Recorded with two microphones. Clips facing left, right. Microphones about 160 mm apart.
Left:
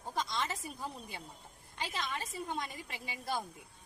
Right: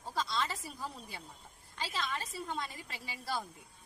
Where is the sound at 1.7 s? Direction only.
15° left (ahead or behind).